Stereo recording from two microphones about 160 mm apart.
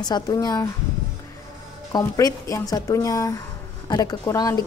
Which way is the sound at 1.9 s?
20° left (ahead or behind).